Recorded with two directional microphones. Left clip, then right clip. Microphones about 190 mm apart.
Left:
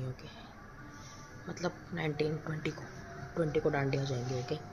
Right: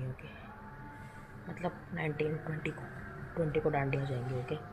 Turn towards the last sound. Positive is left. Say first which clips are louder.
# left 1 dB
turn(degrees=20)  # may be behind; listen again after turning